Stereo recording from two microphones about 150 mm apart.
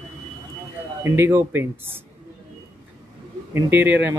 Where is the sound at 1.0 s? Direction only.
15° right (ahead or behind).